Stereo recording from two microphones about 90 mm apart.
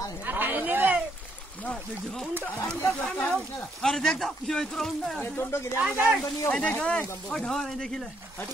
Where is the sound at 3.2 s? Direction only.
5° left (ahead or behind).